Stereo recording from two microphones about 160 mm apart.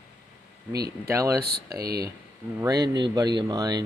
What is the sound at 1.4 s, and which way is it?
Speech, 80° right.